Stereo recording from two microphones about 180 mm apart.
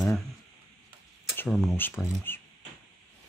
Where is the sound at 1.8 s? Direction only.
10° left (ahead or behind).